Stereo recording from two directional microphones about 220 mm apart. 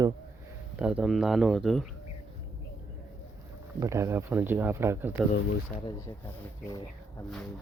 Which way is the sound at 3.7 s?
15° right (ahead or behind).